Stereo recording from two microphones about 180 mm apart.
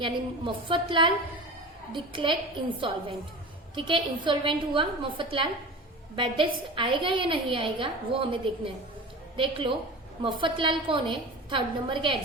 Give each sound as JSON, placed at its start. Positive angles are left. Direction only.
{"t": 0.0, "sound": "a woman's voice", "side_deg": -30}